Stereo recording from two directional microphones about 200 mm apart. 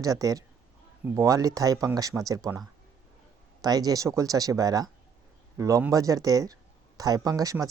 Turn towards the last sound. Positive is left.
turn(degrees=-15)  # may be behind; listen again after turning